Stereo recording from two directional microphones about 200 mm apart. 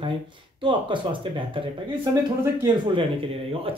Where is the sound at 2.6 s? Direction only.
25° right (ahead or behind).